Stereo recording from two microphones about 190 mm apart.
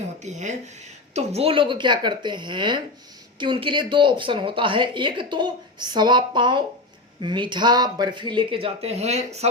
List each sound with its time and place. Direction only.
0.2 s speech: 40° right (ahead or behind)